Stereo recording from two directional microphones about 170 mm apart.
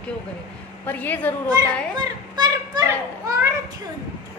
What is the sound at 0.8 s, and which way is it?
Speech, 10° left (ahead or behind).